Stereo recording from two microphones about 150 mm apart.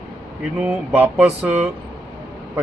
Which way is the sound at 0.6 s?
10° right (ahead or behind).